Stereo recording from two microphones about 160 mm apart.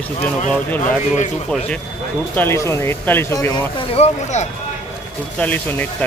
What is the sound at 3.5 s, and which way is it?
Speech, 40° left (ahead or behind).